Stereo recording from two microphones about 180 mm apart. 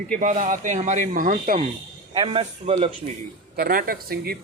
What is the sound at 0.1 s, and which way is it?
Speech, 45° right (ahead or behind).